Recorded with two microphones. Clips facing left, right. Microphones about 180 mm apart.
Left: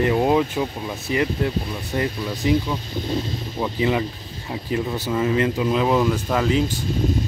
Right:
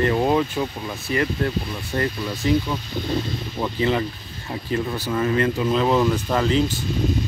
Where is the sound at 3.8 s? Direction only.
10° left (ahead or behind).